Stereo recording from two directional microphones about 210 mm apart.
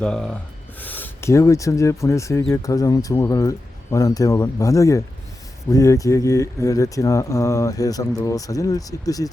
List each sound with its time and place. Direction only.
0.0 s speech: 5° left (ahead or behind)